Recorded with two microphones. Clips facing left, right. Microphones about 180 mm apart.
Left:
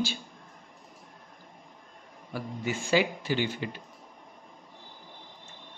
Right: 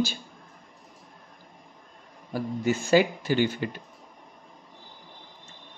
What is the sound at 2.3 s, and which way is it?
Speech, 40° right (ahead or behind).